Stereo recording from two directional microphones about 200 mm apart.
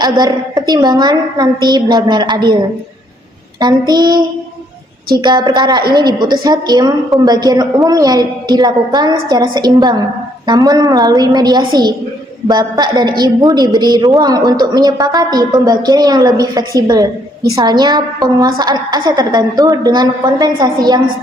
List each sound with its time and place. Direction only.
0.0 s a woman's voice: 20° right (ahead or behind)
3.6 s a woman's voice: 20° right (ahead or behind)